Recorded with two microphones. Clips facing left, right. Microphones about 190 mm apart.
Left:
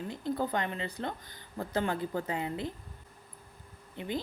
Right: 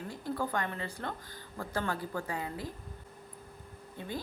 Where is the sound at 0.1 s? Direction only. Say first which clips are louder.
Left 2 dB; 20° left (ahead or behind).